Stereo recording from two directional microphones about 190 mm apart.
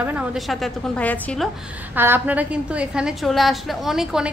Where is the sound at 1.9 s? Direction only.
10° right (ahead or behind).